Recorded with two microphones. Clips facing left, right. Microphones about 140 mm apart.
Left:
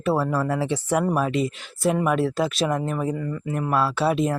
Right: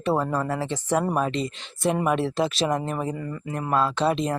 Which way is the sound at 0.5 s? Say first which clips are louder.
Left 2 dB; 10° left (ahead or behind).